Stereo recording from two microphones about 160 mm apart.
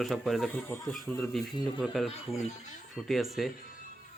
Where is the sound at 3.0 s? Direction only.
Centre (ahead or behind).